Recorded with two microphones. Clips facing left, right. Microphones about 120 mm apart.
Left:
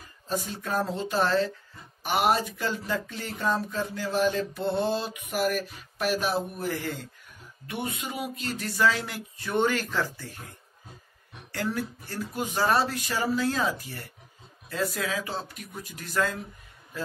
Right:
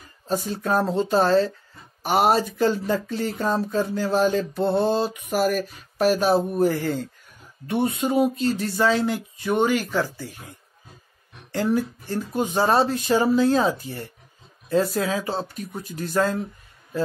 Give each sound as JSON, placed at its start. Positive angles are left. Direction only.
{"t": 0.3, "sound": "speech", "side_deg": -35}
{"t": 11.5, "sound": "speech", "side_deg": -25}